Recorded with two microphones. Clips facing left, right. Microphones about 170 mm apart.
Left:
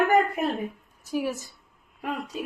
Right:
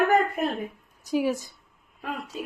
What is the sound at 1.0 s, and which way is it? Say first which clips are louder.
Speech: right 3 dB; 15° right (ahead or behind).